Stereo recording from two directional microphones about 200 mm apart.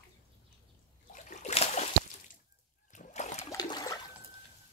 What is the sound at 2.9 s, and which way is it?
Splash, 35° left (ahead or behind).